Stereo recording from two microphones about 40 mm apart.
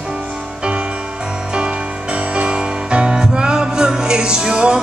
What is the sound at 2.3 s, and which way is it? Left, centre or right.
Music, right.